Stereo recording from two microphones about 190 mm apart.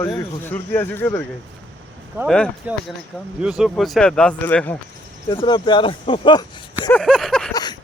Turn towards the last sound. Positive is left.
turn(degrees=5)  # may be behind; listen again after turning